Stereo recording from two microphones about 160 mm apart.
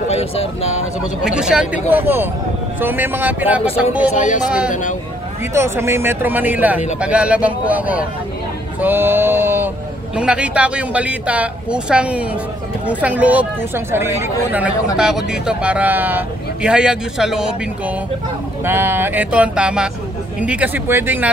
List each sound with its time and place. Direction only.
0.1 s speech: 40° left (ahead or behind)
1.2 s speech: 5° right (ahead or behind)
4.1 s speech: 50° left (ahead or behind)
5.5 s speech: 15° right (ahead or behind)